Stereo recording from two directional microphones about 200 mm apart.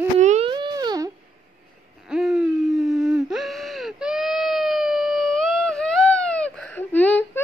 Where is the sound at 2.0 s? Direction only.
Centre (ahead or behind).